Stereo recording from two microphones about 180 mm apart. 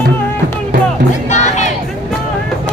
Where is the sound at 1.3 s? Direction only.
40° left (ahead or behind).